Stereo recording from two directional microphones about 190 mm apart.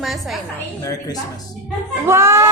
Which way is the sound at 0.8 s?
20° left (ahead or behind).